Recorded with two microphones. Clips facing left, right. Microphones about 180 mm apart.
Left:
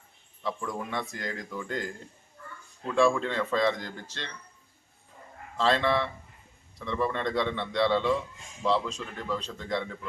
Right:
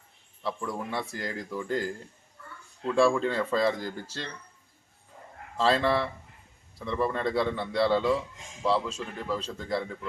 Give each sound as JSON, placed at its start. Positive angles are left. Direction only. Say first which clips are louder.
{"t": 0.4, "sound": "speech", "louder": "right 1 dB", "side_deg": -5}
{"t": 5.5, "sound": "speech", "louder": "right 1 dB", "side_deg": -5}
{"t": 5.8, "sound": "speech", "louder": "right 1 dB", "side_deg": -35}
{"t": 6.7, "sound": "speech", "louder": "right 1 dB", "side_deg": -5}